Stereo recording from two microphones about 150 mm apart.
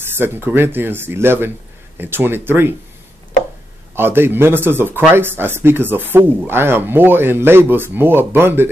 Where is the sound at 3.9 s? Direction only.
15° right (ahead or behind).